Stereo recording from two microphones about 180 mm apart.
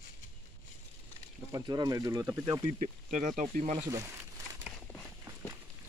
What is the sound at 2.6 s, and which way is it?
Speech, 40° right (ahead or behind).